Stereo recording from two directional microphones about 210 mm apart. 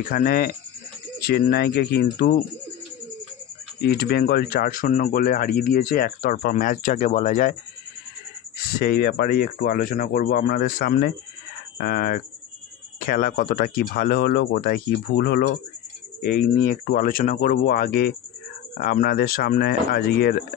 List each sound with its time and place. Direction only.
0.1 s speech: 45° left (ahead or behind)
3.8 s speech: 45° left (ahead or behind)
8.7 s speech: 45° left (ahead or behind)